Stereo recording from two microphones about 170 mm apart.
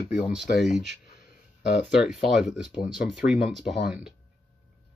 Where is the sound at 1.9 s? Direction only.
5° right (ahead or behind).